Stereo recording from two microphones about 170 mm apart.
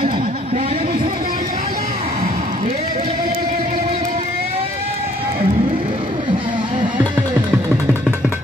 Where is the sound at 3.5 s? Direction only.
45° right (ahead or behind).